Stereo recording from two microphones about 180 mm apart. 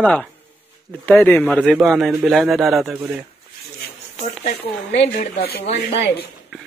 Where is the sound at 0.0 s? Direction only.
5° left (ahead or behind).